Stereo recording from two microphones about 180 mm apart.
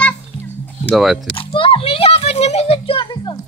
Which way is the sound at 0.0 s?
10° left (ahead or behind).